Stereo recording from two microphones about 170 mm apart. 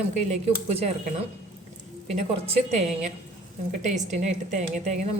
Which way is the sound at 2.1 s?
40° right (ahead or behind).